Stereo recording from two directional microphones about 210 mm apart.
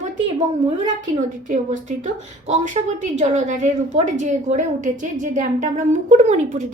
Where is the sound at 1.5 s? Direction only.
35° right (ahead or behind).